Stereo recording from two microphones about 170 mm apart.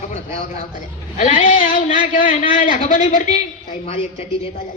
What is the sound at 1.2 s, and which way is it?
Speech, 35° left (ahead or behind).